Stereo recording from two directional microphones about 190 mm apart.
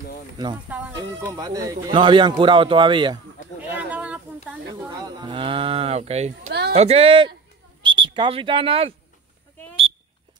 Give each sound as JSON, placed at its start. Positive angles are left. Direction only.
{"t": 0.9, "sound": "speech", "side_deg": -20}
{"t": 3.7, "sound": "a sound", "side_deg": -5}
{"t": 4.6, "sound": "speech", "side_deg": -20}
{"t": 6.4, "sound": "speech", "side_deg": -60}
{"t": 6.7, "sound": "speech", "side_deg": -35}